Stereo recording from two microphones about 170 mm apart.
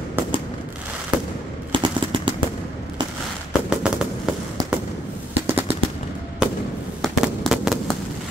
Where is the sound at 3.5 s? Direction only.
5° right (ahead or behind).